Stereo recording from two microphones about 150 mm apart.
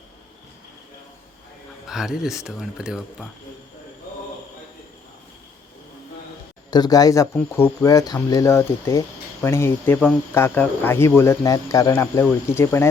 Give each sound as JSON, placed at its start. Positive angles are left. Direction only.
{"t": 1.9, "sound": "speech", "side_deg": -5}
{"t": 6.7, "sound": "speech", "side_deg": 25}